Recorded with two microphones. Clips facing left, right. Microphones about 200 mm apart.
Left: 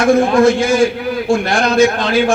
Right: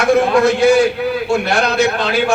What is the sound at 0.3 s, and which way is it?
A man's voice, 65° right (ahead or behind).